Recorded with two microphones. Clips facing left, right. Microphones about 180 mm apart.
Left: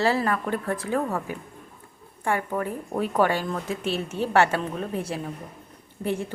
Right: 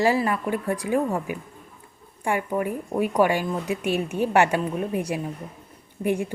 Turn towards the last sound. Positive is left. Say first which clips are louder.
# right 3 dB
turn(degrees=-15)  # may be behind; listen again after turning